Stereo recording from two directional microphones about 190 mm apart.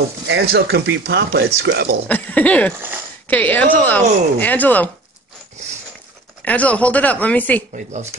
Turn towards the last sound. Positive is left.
turn(degrees=10)  # may be behind; listen again after turning